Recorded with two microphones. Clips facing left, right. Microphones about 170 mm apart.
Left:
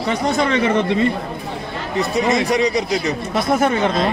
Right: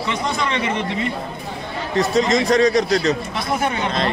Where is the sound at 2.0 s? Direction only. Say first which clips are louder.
Right 1 dB; 10° left (ahead or behind).